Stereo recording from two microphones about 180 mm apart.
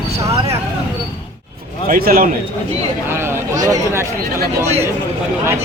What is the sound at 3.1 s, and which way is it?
Speech, 15° right (ahead or behind).